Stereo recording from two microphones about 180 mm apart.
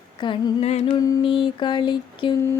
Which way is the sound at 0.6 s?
35° left (ahead or behind).